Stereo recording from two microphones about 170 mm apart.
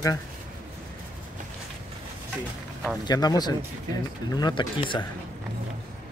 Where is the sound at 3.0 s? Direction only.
25° left (ahead or behind).